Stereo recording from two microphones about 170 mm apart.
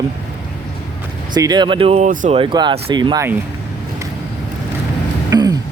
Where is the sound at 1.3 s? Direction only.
25° right (ahead or behind).